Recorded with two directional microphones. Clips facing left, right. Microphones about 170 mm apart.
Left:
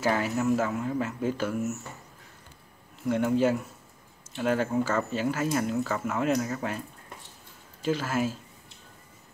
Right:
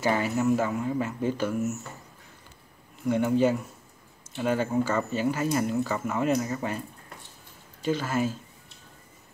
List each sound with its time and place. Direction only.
0.0 s speech: centre (ahead or behind)
3.0 s speech: centre (ahead or behind)
7.8 s speech: centre (ahead or behind)